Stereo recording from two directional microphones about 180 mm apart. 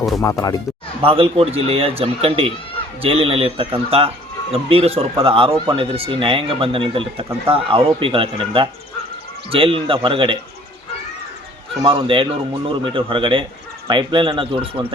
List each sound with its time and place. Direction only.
0.2 s speech: 15° left (ahead or behind)
1.0 s a man's voice: 30° right (ahead or behind)
11.8 s speech: 30° right (ahead or behind)